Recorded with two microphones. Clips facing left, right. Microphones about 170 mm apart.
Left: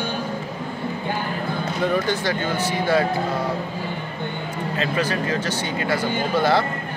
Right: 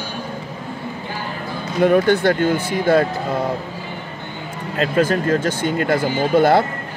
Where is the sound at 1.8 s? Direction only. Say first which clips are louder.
Right 9 dB; 60° right (ahead or behind).